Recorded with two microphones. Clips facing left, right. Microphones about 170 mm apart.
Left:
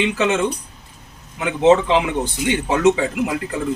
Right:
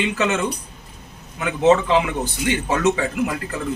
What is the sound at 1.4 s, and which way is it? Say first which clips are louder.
Speech: left 2 dB; 15° left (ahead or behind).